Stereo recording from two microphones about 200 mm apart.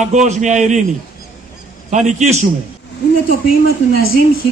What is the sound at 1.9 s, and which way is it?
Speech, 35° right (ahead or behind).